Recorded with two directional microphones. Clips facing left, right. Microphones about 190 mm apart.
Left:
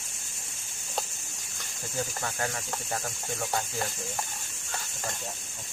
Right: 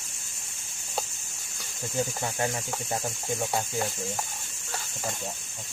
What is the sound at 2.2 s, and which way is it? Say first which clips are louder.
Speech: right 3 dB; 20° right (ahead or behind).